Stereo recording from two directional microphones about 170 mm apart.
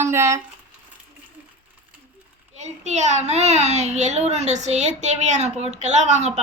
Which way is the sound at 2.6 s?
40° right (ahead or behind).